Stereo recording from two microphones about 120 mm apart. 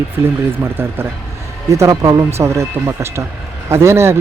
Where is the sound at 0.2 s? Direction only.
20° right (ahead or behind).